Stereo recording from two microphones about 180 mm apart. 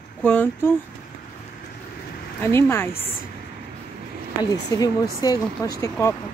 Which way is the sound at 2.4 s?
15° left (ahead or behind).